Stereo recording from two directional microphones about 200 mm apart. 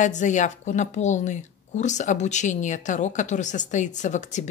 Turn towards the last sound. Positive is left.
turn(degrees=35)  # may be behind; listen again after turning